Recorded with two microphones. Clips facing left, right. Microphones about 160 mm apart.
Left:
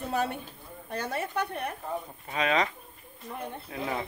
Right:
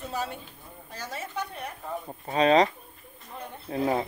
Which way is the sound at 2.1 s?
35° right (ahead or behind).